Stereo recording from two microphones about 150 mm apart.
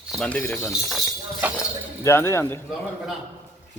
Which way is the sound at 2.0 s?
20° left (ahead or behind).